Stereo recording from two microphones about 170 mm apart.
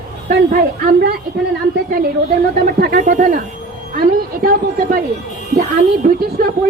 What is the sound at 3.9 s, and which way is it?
Music, 60° right (ahead or behind).